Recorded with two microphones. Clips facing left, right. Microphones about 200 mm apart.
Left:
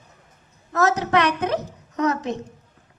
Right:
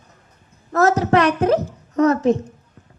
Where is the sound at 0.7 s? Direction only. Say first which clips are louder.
Right 4 dB; 35° right (ahead or behind).